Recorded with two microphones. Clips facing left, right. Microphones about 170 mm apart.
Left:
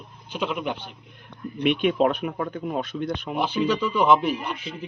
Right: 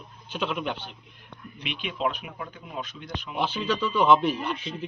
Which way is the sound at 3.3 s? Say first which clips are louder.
Left 3 dB; 10° left (ahead or behind).